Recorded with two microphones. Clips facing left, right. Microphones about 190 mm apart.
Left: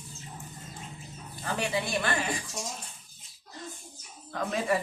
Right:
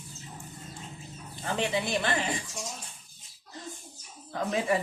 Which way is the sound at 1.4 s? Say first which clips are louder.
Right 1 dB; 20° right (ahead or behind).